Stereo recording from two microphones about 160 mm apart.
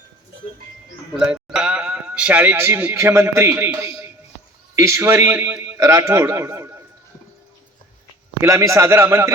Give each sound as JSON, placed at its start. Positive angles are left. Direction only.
{"t": 1.2, "sound": "a man's voice", "side_deg": -5}
{"t": 8.4, "sound": "a man's voice", "side_deg": -20}